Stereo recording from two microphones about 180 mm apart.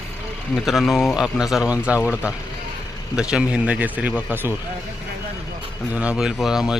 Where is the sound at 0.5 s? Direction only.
Centre (ahead or behind).